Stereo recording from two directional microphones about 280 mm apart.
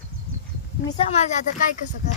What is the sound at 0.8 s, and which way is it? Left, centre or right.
Speech, centre.